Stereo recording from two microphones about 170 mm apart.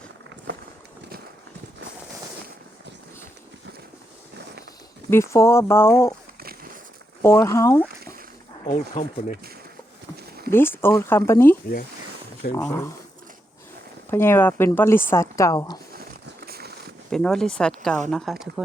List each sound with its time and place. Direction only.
5.1 s speech: 15° left (ahead or behind)
7.2 s speech: 15° left (ahead or behind)
8.6 s speech: 45° left (ahead or behind)
10.2 s a sound: 65° right (ahead or behind)
10.5 s speech: 15° left (ahead or behind)
12.5 s speech: 15° left (ahead or behind)
14.1 s speech: 15° left (ahead or behind)
16.4 s a sound: 70° right (ahead or behind)
17.1 s speech: 5° left (ahead or behind)